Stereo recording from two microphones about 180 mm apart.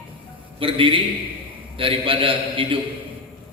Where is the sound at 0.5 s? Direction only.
30° right (ahead or behind).